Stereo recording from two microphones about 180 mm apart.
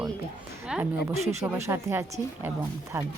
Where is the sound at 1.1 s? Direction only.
40° right (ahead or behind).